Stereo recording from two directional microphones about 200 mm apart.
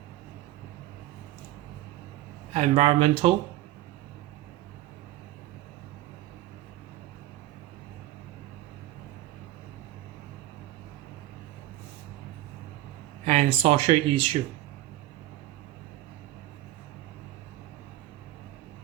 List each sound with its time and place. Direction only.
2.5 s speech: 30° right (ahead or behind)
13.2 s speech: 30° right (ahead or behind)